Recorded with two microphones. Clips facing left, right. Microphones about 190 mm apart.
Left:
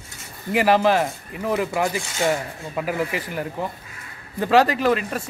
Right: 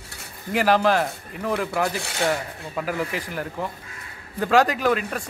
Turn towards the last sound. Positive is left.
turn(degrees=0)  # may be behind; listen again after turning